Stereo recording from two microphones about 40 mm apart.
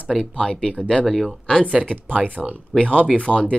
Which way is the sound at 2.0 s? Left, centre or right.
Right.